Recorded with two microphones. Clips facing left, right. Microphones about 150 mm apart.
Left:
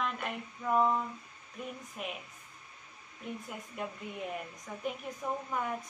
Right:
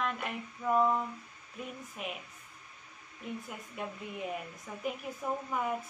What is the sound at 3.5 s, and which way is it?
Speech, centre (ahead or behind).